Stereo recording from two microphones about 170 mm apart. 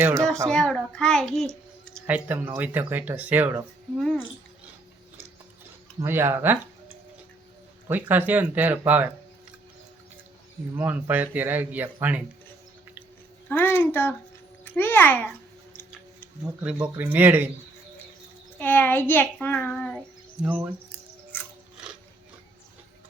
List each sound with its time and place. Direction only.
0.0 s speech: 15° right (ahead or behind)
0.4 s a child's voice: 5° left (ahead or behind)
2.0 s speech: 10° right (ahead or behind)
3.9 s speech: centre (ahead or behind)
6.0 s speech: 15° right (ahead or behind)
10.8 s speech: 10° right (ahead or behind)
13.5 s a child's voice: 10° left (ahead or behind)
16.8 s speech: 10° right (ahead or behind)
18.6 s a child's voice: 10° left (ahead or behind)
20.4 s speech: 10° right (ahead or behind)